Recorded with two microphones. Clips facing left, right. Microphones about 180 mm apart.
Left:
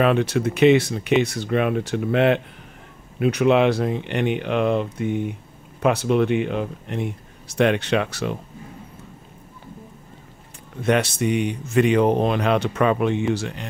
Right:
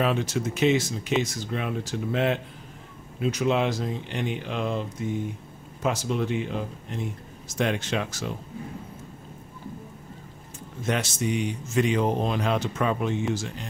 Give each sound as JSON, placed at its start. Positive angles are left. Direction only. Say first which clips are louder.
{"t": 0.0, "sound": "speech", "louder": "left 6 dB", "side_deg": 65}
{"t": 10.8, "sound": "speech", "louder": "left 7 dB", "side_deg": 60}